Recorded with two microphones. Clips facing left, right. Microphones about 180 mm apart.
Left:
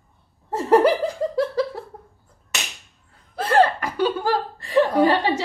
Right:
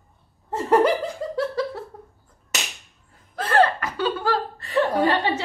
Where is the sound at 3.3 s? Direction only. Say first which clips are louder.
Left 2 dB; 10° left (ahead or behind).